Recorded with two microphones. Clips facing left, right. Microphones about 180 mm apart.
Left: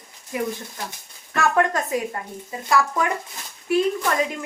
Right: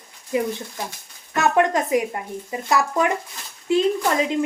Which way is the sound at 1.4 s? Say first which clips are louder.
Right 2 dB; 20° right (ahead or behind).